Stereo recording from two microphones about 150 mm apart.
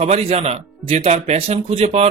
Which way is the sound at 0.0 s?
40° right (ahead or behind).